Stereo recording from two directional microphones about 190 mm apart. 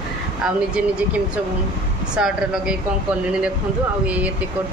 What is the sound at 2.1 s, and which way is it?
Speech, 5° right (ahead or behind).